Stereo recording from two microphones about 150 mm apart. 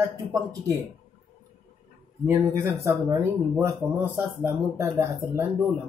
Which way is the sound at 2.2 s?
20° right (ahead or behind).